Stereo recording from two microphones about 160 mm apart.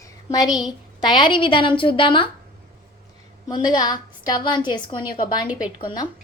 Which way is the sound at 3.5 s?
25° left (ahead or behind).